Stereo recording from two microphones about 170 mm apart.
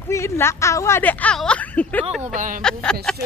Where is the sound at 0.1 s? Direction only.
15° left (ahead or behind).